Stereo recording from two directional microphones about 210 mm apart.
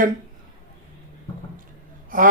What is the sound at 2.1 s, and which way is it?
Gasp, 40° right (ahead or behind).